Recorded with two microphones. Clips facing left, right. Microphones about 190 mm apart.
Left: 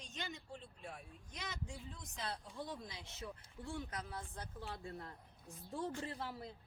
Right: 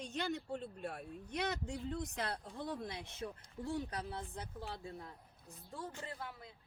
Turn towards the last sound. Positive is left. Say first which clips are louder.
# left 3 dB
turn(degrees=35)  # may be behind; listen again after turning